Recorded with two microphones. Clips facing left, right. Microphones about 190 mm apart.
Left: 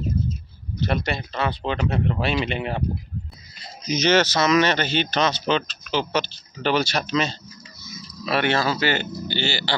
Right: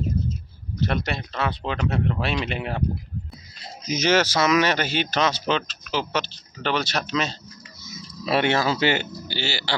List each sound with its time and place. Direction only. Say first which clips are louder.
0.7 s speech: left 1 dB; centre (ahead or behind)
3.8 s speech: left 2 dB; 5° right (ahead or behind)
7.8 s a sound: even; 25° right (ahead or behind)
8.3 s speech: right 1 dB; 20° right (ahead or behind)
9.3 s speech: left 2 dB; 5° right (ahead or behind)